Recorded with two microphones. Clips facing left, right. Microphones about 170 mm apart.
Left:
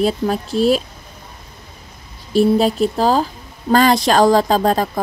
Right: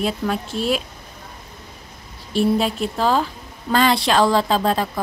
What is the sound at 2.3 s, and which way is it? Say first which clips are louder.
A woman's voice: left 5 dB; 40° left (ahead or behind).